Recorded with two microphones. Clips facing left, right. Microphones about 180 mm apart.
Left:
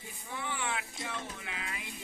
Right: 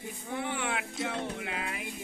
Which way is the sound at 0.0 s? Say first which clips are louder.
Right 6 dB; 55° right (ahead or behind).